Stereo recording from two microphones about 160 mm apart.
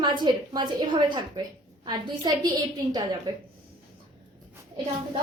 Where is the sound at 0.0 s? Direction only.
30° right (ahead or behind).